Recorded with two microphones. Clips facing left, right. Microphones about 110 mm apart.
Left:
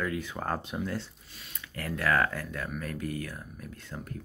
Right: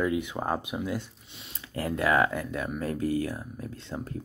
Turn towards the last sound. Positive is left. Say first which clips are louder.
# right 5 dB
turn(degrees=-25)  # may be behind; listen again after turning